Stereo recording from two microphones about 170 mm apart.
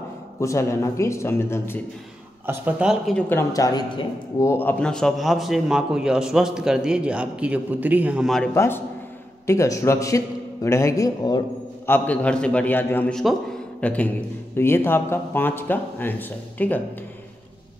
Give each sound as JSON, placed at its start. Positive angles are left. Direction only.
{"t": 0.4, "sound": "a man's voice", "side_deg": 15}
{"t": 2.4, "sound": "speech", "side_deg": -10}
{"t": 3.2, "sound": "speech", "side_deg": 15}
{"t": 8.5, "sound": "a man's voice", "side_deg": 15}
{"t": 11.8, "sound": "a man's voice", "side_deg": 10}